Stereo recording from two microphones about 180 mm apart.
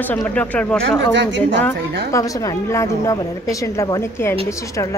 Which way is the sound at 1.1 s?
75° right (ahead or behind).